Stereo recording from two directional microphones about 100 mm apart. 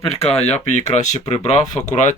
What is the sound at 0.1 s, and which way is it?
Speech, 90° left.